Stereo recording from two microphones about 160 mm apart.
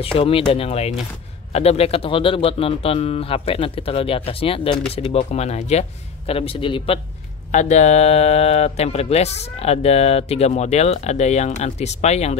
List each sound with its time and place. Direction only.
0.0 s speech: 35° left (ahead or behind)
7.5 s speech: 45° left (ahead or behind)